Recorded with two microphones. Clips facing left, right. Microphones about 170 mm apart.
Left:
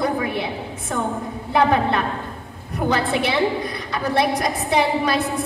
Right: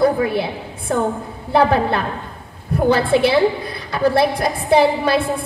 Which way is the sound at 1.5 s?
35° right (ahead or behind).